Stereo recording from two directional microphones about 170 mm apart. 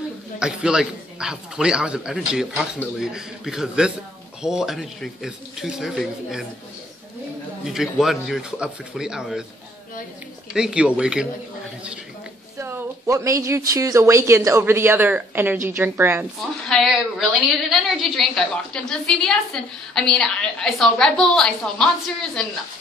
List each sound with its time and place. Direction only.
0.4 s a woman's voice: 5° right (ahead or behind)
7.6 s a woman's voice: centre (ahead or behind)
10.5 s a woman's voice: 5° right (ahead or behind)
12.5 s speech: 15° right (ahead or behind)
16.6 s a woman's voice: centre (ahead or behind)